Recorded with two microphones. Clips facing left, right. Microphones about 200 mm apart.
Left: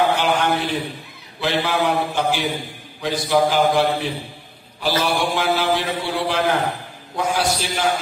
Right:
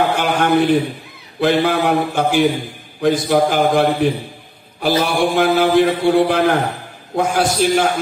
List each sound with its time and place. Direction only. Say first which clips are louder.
0.2 s a sound: right 5 dB; 55° right (ahead or behind)
1.4 s mantra: right 6 dB; 55° right (ahead or behind)
3.0 s a man's voice: right 4 dB; 55° right (ahead or behind)
4.7 s mantra: right 4 dB; 55° right (ahead or behind)
7.2 s a man's voice: right 5 dB; 50° right (ahead or behind)